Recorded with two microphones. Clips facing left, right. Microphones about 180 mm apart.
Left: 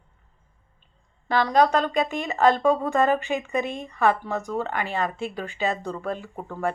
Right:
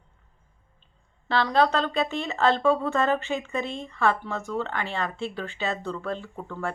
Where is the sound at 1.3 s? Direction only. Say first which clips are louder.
Left 2 dB; 15° left (ahead or behind).